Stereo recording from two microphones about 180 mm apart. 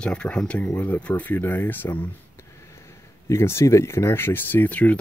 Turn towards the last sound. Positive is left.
turn(degrees=10)  # may be behind; listen again after turning